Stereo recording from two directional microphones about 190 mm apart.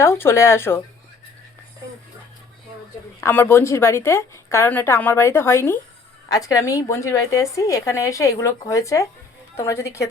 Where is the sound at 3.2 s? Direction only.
15° left (ahead or behind).